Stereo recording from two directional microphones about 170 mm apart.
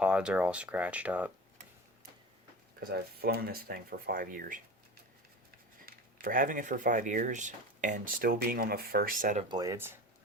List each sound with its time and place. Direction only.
0.0 s speech: 5° right (ahead or behind)
2.9 s speech: 70° right (ahead or behind)
5.8 s speech: 55° right (ahead or behind)
9.5 s speech: 20° right (ahead or behind)